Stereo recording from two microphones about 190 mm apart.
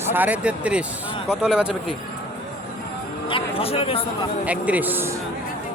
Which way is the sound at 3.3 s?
30° left (ahead or behind).